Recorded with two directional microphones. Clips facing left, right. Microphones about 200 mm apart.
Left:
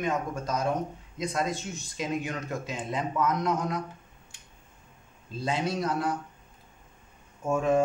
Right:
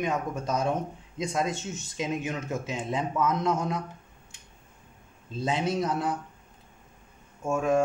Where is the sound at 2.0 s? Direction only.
20° right (ahead or behind).